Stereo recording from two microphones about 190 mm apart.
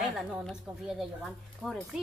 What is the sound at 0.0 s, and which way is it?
Speech, centre (ahead or behind).